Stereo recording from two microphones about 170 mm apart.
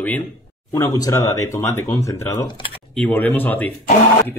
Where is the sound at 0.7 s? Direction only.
20° left (ahead or behind).